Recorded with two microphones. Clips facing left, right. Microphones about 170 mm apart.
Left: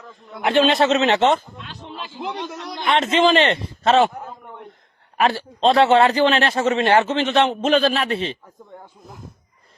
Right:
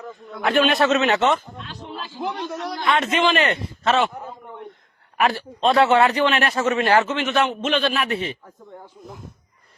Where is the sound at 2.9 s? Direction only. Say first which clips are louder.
Left 3 dB; 30° left (ahead or behind).